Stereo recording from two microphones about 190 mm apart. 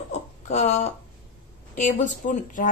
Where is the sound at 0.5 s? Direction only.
35° left (ahead or behind).